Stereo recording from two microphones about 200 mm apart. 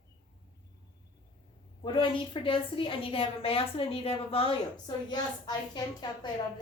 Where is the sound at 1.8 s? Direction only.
25° left (ahead or behind).